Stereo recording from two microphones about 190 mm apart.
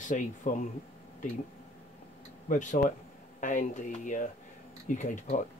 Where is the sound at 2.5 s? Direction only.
40° left (ahead or behind).